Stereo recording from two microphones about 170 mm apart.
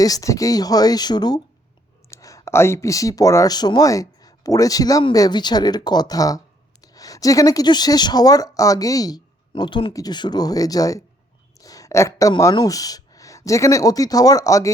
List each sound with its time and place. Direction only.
0.0 s speech: 20° left (ahead or behind)